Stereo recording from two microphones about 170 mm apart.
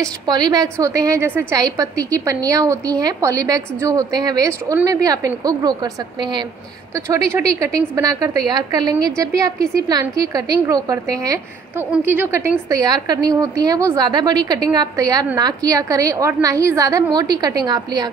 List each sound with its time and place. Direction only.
0.0 s a woman's voice: 25° right (ahead or behind)
7.3 s a woman's voice: 20° right (ahead or behind)